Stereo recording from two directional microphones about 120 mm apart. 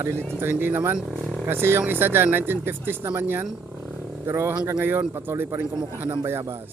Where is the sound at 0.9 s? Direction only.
Centre (ahead or behind).